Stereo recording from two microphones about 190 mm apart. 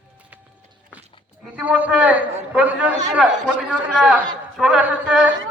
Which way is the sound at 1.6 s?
10° right (ahead or behind).